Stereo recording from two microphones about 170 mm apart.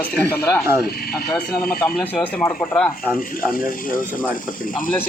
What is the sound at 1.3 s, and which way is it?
Speech, 5° left (ahead or behind).